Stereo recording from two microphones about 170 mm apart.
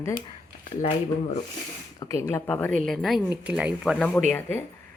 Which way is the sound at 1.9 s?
20° left (ahead or behind).